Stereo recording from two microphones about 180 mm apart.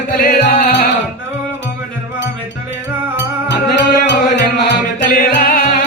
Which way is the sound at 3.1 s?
80° left.